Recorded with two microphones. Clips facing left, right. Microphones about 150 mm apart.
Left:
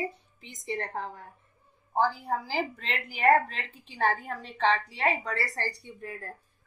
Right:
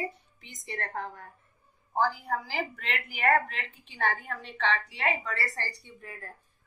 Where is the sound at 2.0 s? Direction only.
30° left (ahead or behind).